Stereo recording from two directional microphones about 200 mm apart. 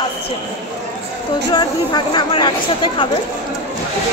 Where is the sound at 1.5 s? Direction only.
20° left (ahead or behind).